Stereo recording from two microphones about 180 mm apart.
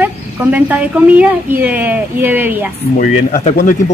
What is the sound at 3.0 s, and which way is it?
Speech, 45° left (ahead or behind).